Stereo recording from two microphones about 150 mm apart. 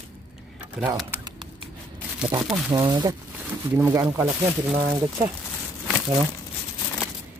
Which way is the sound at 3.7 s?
15° right (ahead or behind).